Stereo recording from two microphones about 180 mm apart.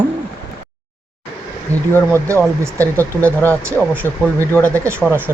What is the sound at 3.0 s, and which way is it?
Speech, 10° left (ahead or behind).